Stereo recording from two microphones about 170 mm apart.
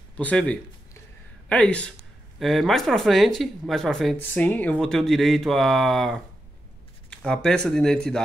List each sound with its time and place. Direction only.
0.2 s speech: 10° left (ahead or behind)